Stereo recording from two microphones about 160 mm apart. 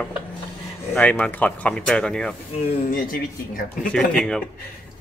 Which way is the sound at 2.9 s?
65° left (ahead or behind).